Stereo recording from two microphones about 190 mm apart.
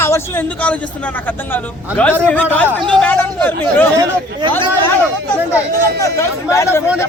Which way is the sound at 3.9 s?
20° right (ahead or behind).